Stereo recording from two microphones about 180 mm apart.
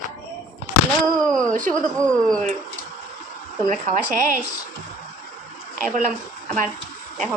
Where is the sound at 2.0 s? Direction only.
5° left (ahead or behind).